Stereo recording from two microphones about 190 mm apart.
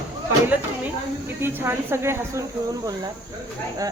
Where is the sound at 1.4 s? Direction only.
10° right (ahead or behind).